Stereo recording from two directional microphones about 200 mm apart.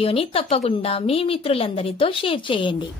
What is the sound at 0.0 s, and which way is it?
A woman's voice, 30° left (ahead or behind).